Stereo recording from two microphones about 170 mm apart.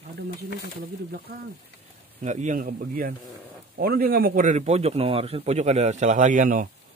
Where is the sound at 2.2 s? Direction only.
45° right (ahead or behind).